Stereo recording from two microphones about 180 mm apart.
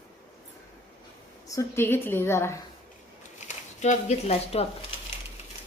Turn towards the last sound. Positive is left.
turn(degrees=35)  # may be behind; listen again after turning